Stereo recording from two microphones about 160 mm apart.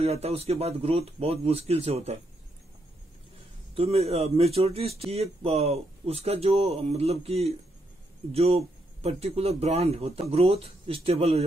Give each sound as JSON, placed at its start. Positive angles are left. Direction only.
{"t": 0.0, "sound": "speech", "side_deg": -40}
{"t": 3.7, "sound": "speech", "side_deg": -40}